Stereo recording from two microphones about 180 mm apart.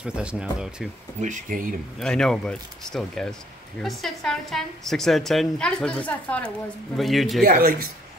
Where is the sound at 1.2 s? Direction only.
45° right (ahead or behind).